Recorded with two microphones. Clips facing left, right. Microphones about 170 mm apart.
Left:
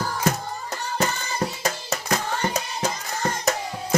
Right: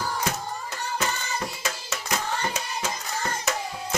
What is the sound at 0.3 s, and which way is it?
Hands, 40° left (ahead or behind).